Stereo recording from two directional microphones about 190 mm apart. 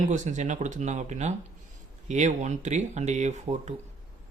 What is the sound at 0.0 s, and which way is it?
Speech, 40° right (ahead or behind).